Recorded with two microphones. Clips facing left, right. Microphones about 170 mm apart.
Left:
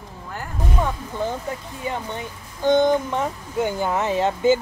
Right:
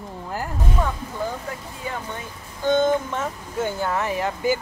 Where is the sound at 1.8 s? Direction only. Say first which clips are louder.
Left 3 dB; 20° left (ahead or behind).